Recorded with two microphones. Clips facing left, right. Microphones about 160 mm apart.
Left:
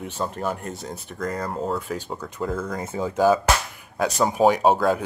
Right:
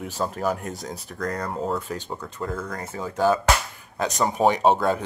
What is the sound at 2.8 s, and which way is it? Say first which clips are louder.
Speech: left 3 dB; 20° left (ahead or behind).